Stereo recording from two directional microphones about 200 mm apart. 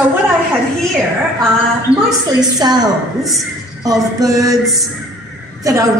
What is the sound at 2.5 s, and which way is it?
A woman's voice, 20° right (ahead or behind).